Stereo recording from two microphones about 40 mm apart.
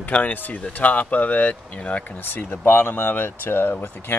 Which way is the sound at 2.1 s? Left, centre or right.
Left.